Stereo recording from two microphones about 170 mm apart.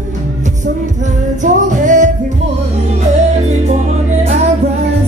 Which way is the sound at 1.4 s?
50° right (ahead or behind).